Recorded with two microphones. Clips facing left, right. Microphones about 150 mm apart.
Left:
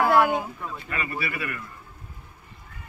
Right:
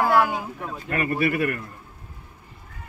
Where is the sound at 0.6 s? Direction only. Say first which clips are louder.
Right 5 dB; 55° right (ahead or behind).